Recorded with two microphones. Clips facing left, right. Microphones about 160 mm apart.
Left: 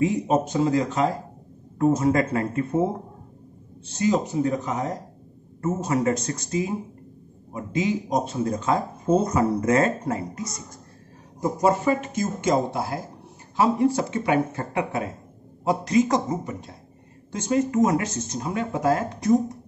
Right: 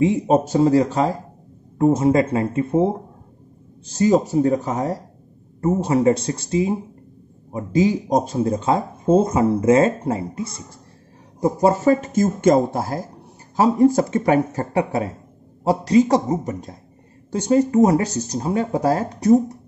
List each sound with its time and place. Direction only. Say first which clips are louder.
0.0 s speech: right 5 dB; 30° right (ahead or behind)
4.3 s speech: right 6 dB; 35° right (ahead or behind)